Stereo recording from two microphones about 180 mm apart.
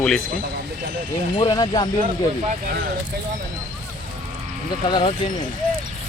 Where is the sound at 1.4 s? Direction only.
20° left (ahead or behind).